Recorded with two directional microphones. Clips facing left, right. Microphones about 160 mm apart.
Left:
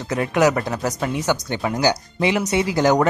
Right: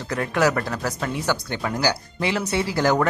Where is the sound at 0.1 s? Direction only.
20° left (ahead or behind).